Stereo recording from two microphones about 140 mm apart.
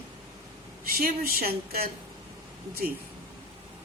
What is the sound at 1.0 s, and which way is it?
Speech, 90° right.